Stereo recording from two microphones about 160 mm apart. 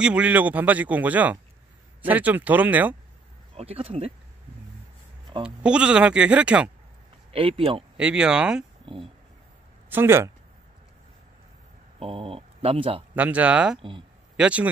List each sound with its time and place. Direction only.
0.0 s speech: 10° right (ahead or behind)
3.5 s speech: 40° right (ahead or behind)
5.4 s speech: 5° right (ahead or behind)
7.3 s speech: 35° right (ahead or behind)
8.0 s speech: 5° right (ahead or behind)
8.8 s speech: 35° right (ahead or behind)
9.8 s speech: 15° right (ahead or behind)
12.0 s speech: 35° right (ahead or behind)
13.1 s speech: 10° right (ahead or behind)
13.7 s speech: 30° right (ahead or behind)
14.3 s speech: 5° right (ahead or behind)